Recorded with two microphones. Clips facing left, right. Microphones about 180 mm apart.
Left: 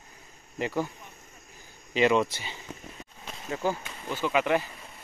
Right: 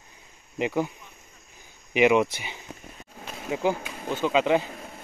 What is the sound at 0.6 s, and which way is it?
Speech, 15° right (ahead or behind).